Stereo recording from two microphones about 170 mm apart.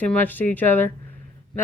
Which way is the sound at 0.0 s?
10° left (ahead or behind).